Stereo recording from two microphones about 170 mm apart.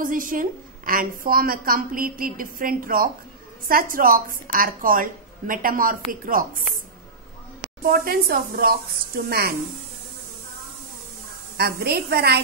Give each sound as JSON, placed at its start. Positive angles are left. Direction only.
{"t": 0.0, "sound": "a woman's voice", "side_deg": -55}
{"t": 7.8, "sound": "a woman's voice", "side_deg": -60}
{"t": 11.5, "sound": "a woman's voice", "side_deg": -70}